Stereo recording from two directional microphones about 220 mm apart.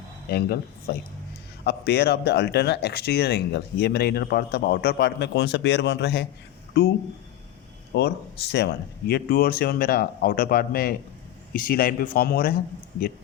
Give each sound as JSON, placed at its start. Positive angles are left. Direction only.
{"t": 0.3, "sound": "speech", "side_deg": 45}
{"t": 7.9, "sound": "speech", "side_deg": 50}